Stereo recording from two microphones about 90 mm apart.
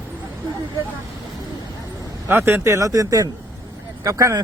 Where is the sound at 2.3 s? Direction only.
25° right (ahead or behind).